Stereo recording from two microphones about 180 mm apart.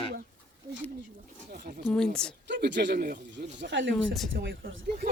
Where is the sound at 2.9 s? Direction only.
50° right (ahead or behind).